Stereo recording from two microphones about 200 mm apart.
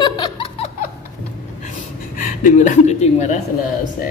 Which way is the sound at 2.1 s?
40° left (ahead or behind).